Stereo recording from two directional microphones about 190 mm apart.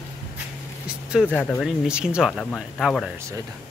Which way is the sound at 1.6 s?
5° right (ahead or behind).